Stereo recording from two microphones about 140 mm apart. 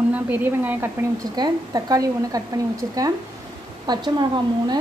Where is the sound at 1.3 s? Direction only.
30° right (ahead or behind).